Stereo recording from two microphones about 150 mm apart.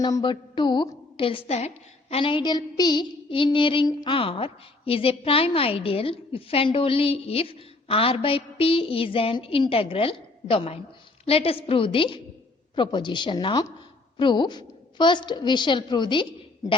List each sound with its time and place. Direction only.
0.0 s a woman's voice: 30° left (ahead or behind)